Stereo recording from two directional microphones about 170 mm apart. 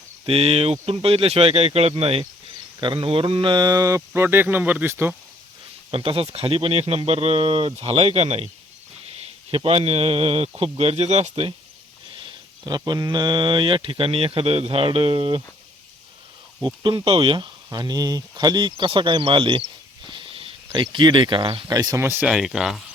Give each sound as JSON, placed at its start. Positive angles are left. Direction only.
{"t": 0.3, "sound": "speech", "side_deg": -35}
{"t": 5.9, "sound": "speech", "side_deg": -30}
{"t": 9.5, "sound": "speech", "side_deg": -35}
{"t": 12.6, "sound": "speech", "side_deg": -25}
{"t": 16.6, "sound": "speech", "side_deg": -30}
{"t": 20.1, "sound": "a sound", "side_deg": -30}
{"t": 20.8, "sound": "speech", "side_deg": -25}